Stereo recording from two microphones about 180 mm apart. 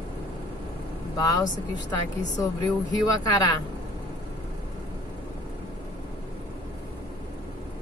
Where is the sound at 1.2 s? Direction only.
20° left (ahead or behind).